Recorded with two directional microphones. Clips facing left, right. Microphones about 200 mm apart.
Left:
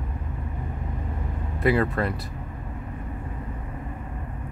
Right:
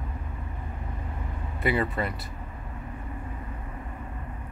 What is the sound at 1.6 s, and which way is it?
Speech, centre (ahead or behind).